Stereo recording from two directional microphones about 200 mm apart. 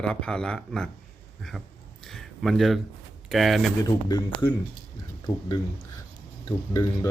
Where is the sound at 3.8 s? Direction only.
20° left (ahead or behind).